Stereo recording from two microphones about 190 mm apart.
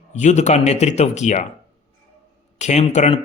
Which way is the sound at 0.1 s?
35° left (ahead or behind).